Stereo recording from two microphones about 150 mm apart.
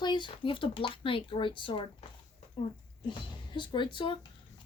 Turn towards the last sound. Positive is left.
turn(degrees=35)  # may be behind; listen again after turning